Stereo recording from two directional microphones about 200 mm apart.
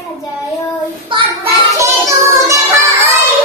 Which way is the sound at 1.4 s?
15° right (ahead or behind).